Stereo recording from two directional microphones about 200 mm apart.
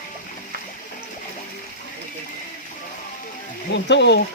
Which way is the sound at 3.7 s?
60° left (ahead or behind).